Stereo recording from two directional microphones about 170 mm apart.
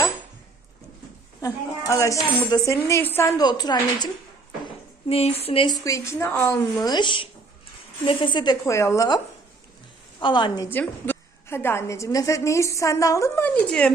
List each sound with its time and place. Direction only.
1.4 s speech: 20° left (ahead or behind)
5.0 s speech: 35° left (ahead or behind)
10.7 s a woman's voice: 10° left (ahead or behind)